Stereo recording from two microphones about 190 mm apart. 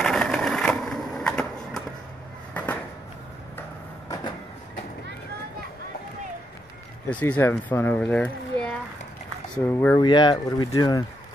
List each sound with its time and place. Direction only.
0.0 s skateboard: 5° left (ahead or behind)
2.5 s a sound: 10° left (ahead or behind)
7.1 s speech: 10° left (ahead or behind)
9.9 s speech: 25° left (ahead or behind)